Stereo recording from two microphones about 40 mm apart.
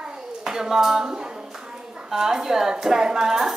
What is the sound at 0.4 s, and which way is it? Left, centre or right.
Speech, centre.